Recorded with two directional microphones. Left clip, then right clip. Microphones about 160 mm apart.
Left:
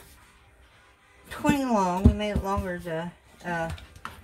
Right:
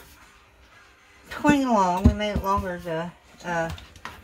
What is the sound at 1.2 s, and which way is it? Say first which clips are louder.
Speech: right 4 dB; 15° left (ahead or behind).